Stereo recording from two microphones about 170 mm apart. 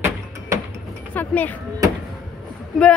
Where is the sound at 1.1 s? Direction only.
10° left (ahead or behind).